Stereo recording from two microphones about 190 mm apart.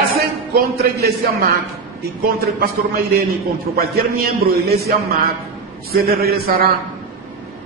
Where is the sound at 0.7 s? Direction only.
55° right (ahead or behind).